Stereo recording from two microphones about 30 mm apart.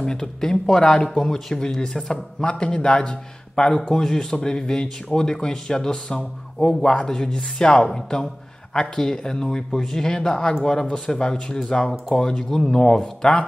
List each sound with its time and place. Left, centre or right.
0.0 s speech: left
2.4 s speech: left
3.9 s speech: centre
4.4 s speech: left
7.2 s speech: centre
7.5 s speech: left
7.8 s speech: centre
9.7 s speech: centre